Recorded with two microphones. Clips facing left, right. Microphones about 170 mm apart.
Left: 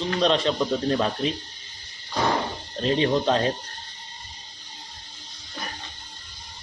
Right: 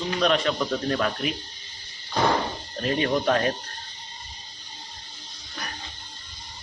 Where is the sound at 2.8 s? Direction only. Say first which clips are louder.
Left 2 dB; 25° left (ahead or behind).